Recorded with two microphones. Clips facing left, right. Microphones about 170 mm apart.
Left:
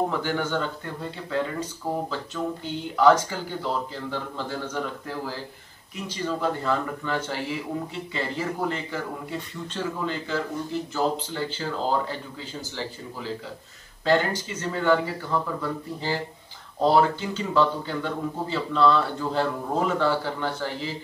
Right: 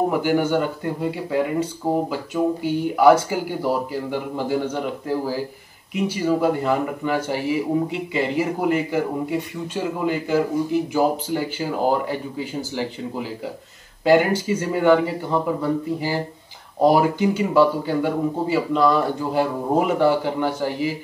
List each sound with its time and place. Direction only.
0.1 s speech: 15° right (ahead or behind)